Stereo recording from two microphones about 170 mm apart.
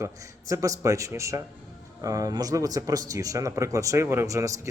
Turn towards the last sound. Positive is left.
turn(degrees=-20)  # may be behind; listen again after turning